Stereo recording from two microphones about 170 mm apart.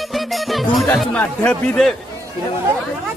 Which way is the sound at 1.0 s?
10° left (ahead or behind).